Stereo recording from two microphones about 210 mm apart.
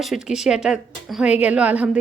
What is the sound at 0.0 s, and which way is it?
A woman's voice, centre (ahead or behind).